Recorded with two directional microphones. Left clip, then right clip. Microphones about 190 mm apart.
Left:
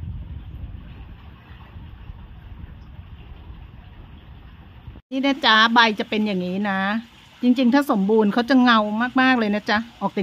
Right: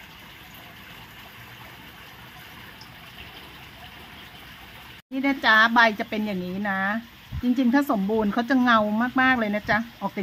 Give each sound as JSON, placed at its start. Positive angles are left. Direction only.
{"t": 5.1, "sound": "speech", "side_deg": 65}